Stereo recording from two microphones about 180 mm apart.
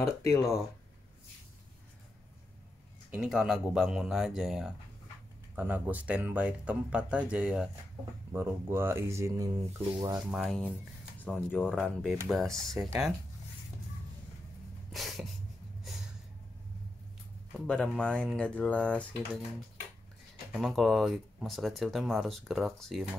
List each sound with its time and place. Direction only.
0.3 s speech: 15° left (ahead or behind)
3.1 s speech: 5° right (ahead or behind); by 10.2 s 20° right (ahead or behind)
10.3 s speech: centre (ahead or behind)
14.9 s a sound: centre (ahead or behind)
17.6 s speech: 5° left (ahead or behind)
20.5 s speech: centre (ahead or behind)